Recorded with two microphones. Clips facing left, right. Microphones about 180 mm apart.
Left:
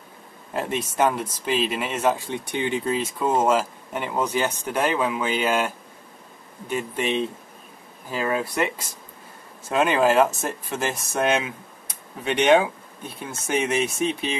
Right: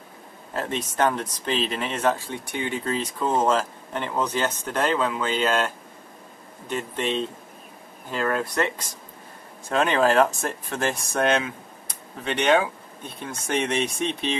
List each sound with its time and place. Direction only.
0.5 s speech: 10° left (ahead or behind)
2.2 s speech: 20° left (ahead or behind)
2.8 s speech: 10° left (ahead or behind)
6.7 s speech: 10° left (ahead or behind)